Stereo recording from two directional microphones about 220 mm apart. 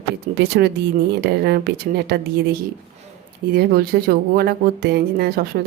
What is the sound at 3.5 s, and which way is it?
Speech, 40° right (ahead or behind).